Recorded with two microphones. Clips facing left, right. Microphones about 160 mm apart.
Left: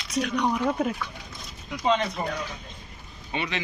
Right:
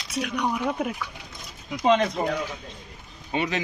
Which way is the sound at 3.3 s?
40° right (ahead or behind).